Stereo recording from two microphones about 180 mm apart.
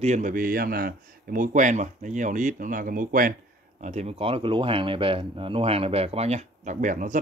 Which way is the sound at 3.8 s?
40° right (ahead or behind).